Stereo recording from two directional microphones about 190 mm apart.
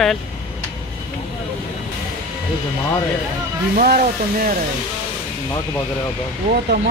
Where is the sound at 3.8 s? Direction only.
45° right (ahead or behind).